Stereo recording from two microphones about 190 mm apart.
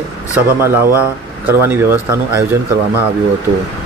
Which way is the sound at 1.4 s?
10° right (ahead or behind).